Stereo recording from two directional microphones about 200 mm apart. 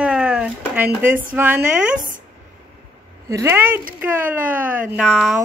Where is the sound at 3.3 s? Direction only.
15° right (ahead or behind).